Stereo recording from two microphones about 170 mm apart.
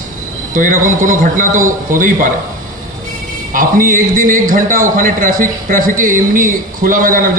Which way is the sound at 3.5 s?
55° right (ahead or behind).